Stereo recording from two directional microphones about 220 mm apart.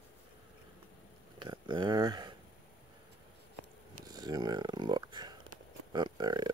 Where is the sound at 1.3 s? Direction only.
20° right (ahead or behind).